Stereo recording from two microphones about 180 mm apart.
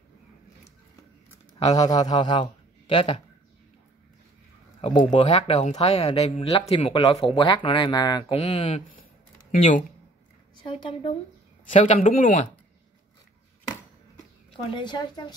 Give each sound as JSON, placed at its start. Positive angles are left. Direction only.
{"t": 1.6, "sound": "speech", "side_deg": 20}
{"t": 4.8, "sound": "speech", "side_deg": 30}
{"t": 8.4, "sound": "speech", "side_deg": 40}
{"t": 10.6, "sound": "speech", "side_deg": 25}
{"t": 11.7, "sound": "a man's voice", "side_deg": 40}
{"t": 14.7, "sound": "speech", "side_deg": 25}